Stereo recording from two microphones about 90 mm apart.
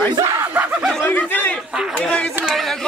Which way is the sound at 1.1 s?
20° left (ahead or behind).